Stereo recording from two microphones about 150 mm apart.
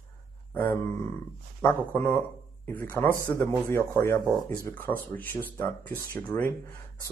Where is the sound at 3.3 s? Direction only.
15° left (ahead or behind).